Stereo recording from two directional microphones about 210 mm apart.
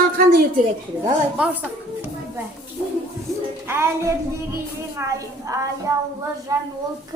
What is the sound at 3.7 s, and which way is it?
Music, 10° right (ahead or behind).